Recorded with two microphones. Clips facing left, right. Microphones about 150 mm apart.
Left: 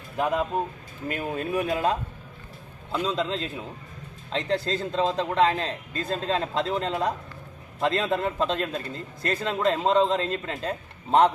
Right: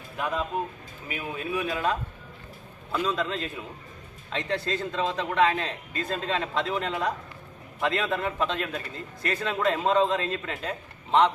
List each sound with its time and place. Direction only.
1.0 s a man's voice: 40° left (ahead or behind)
2.9 s a man's voice: 25° left (ahead or behind); by 11.3 s 40° left (ahead or behind)